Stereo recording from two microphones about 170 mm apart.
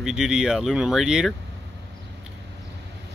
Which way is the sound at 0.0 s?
5° right (ahead or behind).